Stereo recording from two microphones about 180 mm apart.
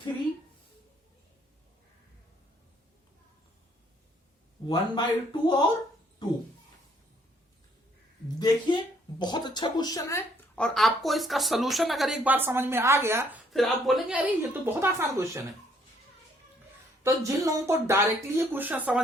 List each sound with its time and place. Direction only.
4.7 s speech: 25° left (ahead or behind)
8.4 s speech: 25° left (ahead or behind); by 13.4 s 15° right (ahead or behind)
13.5 s speech: centre (ahead or behind); by 15.4 s 15° right (ahead or behind)
17.0 s speech: 15° right (ahead or behind)